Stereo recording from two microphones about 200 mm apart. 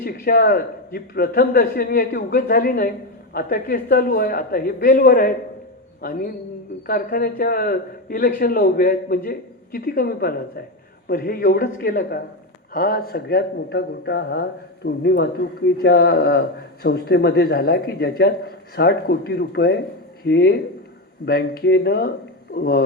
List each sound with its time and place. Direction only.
0.0 s speech: 45° left (ahead or behind)